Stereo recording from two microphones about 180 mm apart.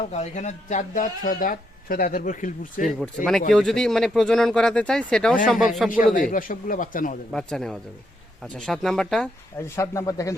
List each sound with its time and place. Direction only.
0.0 s speech: 40° left (ahead or behind)
3.5 s speech: 5° left (ahead or behind)
6.1 s speech: 50° left (ahead or behind)
7.3 s speech: centre (ahead or behind)
9.6 s speech: 15° left (ahead or behind)